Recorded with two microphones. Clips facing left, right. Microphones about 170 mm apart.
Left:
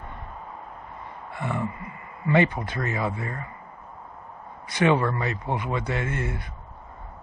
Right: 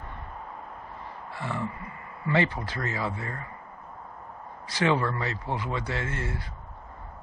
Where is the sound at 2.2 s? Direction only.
20° left (ahead or behind).